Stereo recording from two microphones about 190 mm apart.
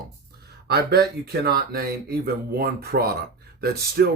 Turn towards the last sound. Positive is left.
turn(degrees=-55)  # may be behind; listen again after turning